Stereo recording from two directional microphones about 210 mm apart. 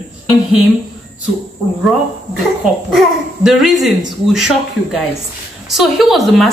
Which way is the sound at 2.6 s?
Centre (ahead or behind).